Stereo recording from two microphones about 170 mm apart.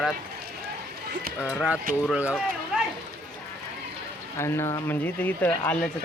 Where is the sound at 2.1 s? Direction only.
10° right (ahead or behind).